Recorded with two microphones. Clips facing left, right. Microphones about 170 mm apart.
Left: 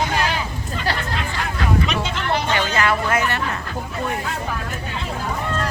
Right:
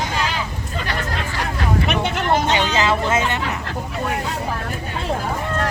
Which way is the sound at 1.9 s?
60° right (ahead or behind).